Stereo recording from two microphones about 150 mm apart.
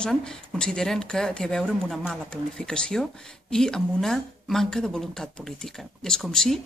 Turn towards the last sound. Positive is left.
turn(degrees=5)  # may be behind; listen again after turning